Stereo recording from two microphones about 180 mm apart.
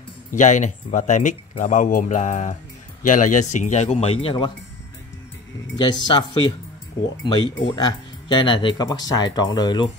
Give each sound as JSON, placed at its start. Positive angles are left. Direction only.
{"t": 0.3, "sound": "speech", "side_deg": 45}
{"t": 5.8, "sound": "speech", "side_deg": 25}
{"t": 7.0, "sound": "speech", "side_deg": 90}
{"t": 7.7, "sound": "speech", "side_deg": 25}